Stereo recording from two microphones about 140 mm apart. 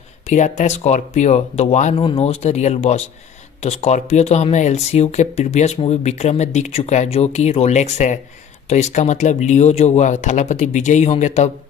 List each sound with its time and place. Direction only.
0.3 s speech: 60° left (ahead or behind)
2.0 s speech: 40° left (ahead or behind)